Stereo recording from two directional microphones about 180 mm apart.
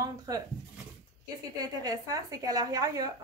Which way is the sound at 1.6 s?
20° right (ahead or behind).